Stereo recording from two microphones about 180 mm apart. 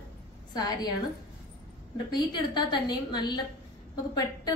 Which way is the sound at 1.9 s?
25° left (ahead or behind).